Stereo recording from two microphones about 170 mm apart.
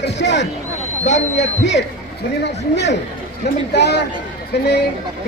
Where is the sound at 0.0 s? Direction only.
90° left.